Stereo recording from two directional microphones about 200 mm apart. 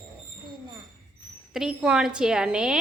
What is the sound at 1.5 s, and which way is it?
A woman's voice, 5° right (ahead or behind).